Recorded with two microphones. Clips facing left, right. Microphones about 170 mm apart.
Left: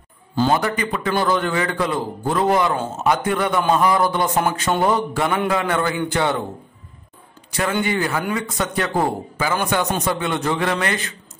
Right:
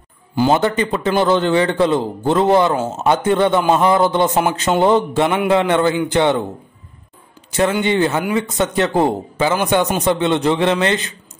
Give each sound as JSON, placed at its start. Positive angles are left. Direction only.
{"t": 0.5, "sound": "a man's voice", "side_deg": -25}
{"t": 7.8, "sound": "a man's voice", "side_deg": -25}